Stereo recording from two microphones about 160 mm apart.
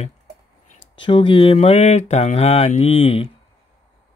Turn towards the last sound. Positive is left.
turn(degrees=40)  # may be behind; listen again after turning